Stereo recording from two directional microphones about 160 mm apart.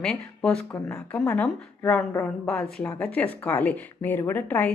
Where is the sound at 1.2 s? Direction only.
15° left (ahead or behind).